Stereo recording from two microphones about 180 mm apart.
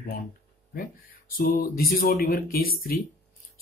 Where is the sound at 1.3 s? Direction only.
50° left (ahead or behind).